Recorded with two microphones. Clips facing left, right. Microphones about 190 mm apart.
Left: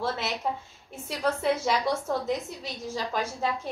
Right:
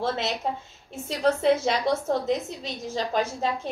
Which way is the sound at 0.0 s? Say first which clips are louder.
Right 3 dB; 25° right (ahead or behind).